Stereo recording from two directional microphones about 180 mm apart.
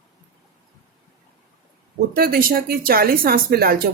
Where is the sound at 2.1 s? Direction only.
55° right (ahead or behind).